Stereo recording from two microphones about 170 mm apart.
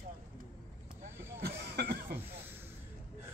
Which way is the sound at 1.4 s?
65° right (ahead or behind).